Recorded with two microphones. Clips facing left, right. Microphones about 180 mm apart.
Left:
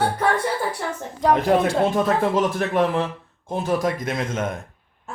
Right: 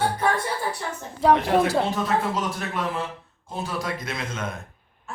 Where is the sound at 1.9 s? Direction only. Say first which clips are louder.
Left 5 dB; 55° left (ahead or behind).